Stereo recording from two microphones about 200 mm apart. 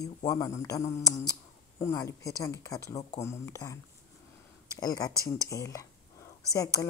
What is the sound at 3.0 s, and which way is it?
Speech, 35° left (ahead or behind).